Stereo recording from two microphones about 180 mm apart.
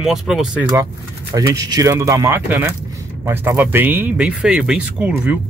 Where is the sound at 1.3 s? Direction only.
20° right (ahead or behind).